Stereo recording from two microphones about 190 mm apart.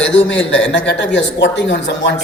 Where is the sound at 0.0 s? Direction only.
75° left (ahead or behind).